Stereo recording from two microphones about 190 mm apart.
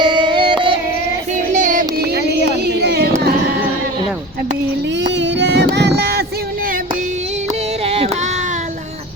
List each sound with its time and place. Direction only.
0.0 s music: 25° right (ahead or behind)
1.5 s child singing: 45° right (ahead or behind); by 3.1 s 60° right (ahead or behind)
5.0 s a sound: 65° right (ahead or behind)
7.9 s child singing: 30° right (ahead or behind)